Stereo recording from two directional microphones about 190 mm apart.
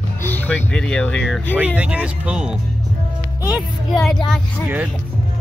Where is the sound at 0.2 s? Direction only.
10° left (ahead or behind).